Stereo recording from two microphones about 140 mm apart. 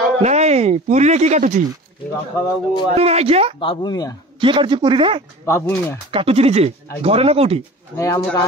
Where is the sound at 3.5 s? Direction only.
30° left (ahead or behind).